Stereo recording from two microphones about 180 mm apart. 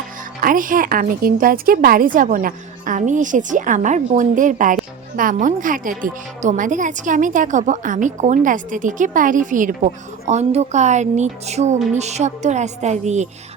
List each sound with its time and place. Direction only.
0.4 s speech: 50° right (ahead or behind)